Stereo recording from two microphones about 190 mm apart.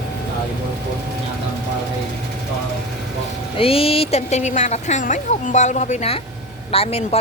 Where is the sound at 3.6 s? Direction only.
30° left (ahead or behind).